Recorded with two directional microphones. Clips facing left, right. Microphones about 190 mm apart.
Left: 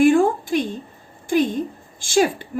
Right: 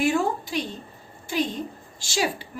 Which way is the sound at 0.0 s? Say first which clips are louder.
Left 8 dB; 50° left (ahead or behind).